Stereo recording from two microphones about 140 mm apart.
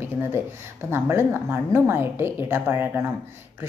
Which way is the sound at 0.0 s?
15° right (ahead or behind).